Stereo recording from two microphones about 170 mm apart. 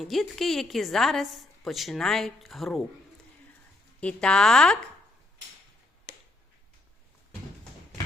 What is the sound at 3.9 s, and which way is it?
Speech, 5° left (ahead or behind).